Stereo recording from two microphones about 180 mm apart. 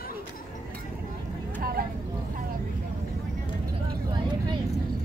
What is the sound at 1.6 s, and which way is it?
Vehicle, 55° right (ahead or behind).